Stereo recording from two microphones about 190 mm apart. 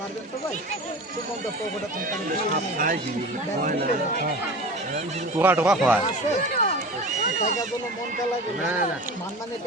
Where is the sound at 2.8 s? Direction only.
45° right (ahead or behind).